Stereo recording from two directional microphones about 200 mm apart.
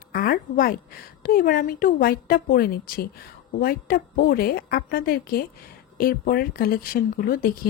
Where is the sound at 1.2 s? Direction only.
45° left (ahead or behind).